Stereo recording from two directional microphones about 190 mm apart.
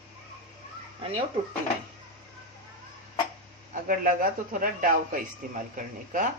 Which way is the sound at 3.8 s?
45° right (ahead or behind).